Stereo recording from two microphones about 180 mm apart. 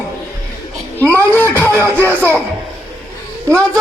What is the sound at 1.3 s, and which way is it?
Speech, 10° left (ahead or behind).